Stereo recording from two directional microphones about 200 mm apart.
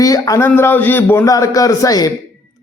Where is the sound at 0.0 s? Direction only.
15° left (ahead or behind).